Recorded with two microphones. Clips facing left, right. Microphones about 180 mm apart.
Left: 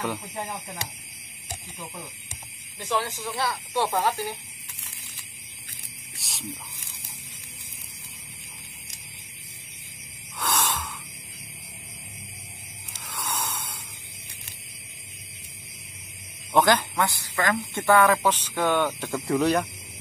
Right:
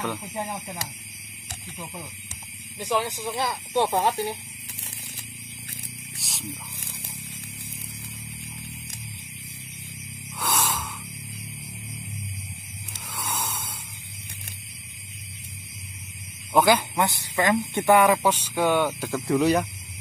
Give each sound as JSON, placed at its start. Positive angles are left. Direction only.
{"t": 0.2, "sound": "speech", "side_deg": -15}
{"t": 2.8, "sound": "speech", "side_deg": -15}
{"t": 6.1, "sound": "snake", "side_deg": 0}
{"t": 10.4, "sound": "a sound", "side_deg": -5}
{"t": 13.1, "sound": "a sound", "side_deg": -5}
{"t": 16.5, "sound": "speech", "side_deg": -10}